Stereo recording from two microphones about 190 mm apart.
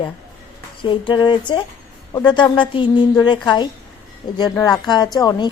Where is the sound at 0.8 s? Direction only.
25° left (ahead or behind).